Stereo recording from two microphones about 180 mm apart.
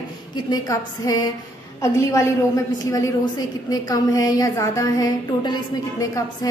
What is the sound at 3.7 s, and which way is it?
A woman's voice, 20° left (ahead or behind).